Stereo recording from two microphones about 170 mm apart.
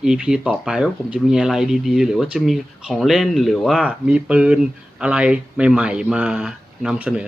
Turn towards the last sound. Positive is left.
turn(degrees=-5)  # may be behind; listen again after turning